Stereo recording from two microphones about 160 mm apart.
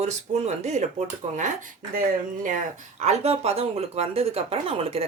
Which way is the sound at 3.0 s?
40° right (ahead or behind).